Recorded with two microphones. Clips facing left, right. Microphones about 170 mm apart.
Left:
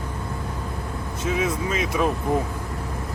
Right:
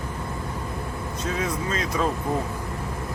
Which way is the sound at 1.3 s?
10° left (ahead or behind).